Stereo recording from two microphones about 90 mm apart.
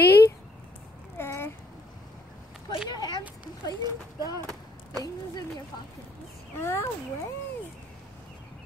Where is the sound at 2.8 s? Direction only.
50° left (ahead or behind).